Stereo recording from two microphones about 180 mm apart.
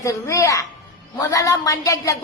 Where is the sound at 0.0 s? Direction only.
15° left (ahead or behind).